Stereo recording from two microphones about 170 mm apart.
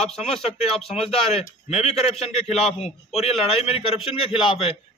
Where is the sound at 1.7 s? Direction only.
40° left (ahead or behind).